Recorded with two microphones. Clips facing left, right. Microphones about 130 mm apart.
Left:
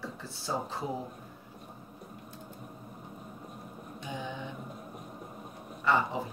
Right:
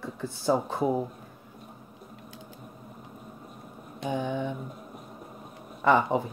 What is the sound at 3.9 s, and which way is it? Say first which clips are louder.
Mantra: right 10 dB; 55° right (ahead or behind).